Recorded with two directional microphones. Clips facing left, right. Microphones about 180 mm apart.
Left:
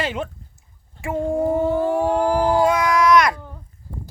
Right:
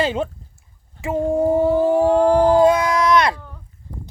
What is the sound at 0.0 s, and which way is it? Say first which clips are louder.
Speech: right 5 dB; 30° right (ahead or behind).